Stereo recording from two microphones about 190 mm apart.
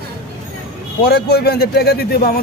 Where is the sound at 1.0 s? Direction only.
60° left (ahead or behind).